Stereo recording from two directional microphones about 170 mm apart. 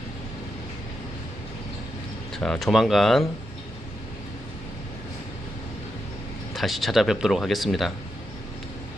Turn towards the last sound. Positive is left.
turn(degrees=0)  # may be behind; listen again after turning